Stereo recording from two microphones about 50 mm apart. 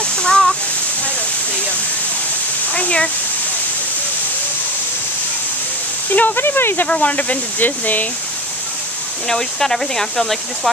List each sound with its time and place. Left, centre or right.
0.0 s a sound: centre
2.7 s a sound: left
6.0 s speech: left
6.4 s speech: left
6.9 s speech: left
9.3 s speech: centre